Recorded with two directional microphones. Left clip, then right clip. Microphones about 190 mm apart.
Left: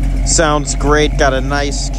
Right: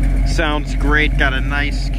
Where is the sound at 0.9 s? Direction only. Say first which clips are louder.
Left 4 dB; 40° left (ahead or behind).